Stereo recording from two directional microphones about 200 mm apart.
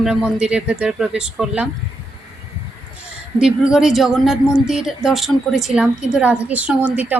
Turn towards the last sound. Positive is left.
turn(degrees=-10)  # may be behind; listen again after turning